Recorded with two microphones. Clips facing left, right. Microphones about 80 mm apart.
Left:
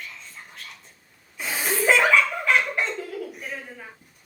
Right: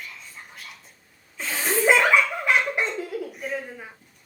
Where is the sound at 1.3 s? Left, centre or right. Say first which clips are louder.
Even; centre.